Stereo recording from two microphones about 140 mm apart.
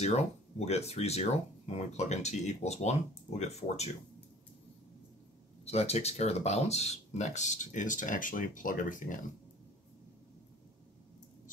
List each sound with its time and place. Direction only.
0.0 s speech: 50° left (ahead or behind)
5.7 s speech: 50° left (ahead or behind); by 9.1 s 70° left (ahead or behind)